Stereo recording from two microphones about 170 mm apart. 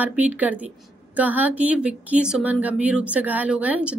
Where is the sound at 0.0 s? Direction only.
10° right (ahead or behind).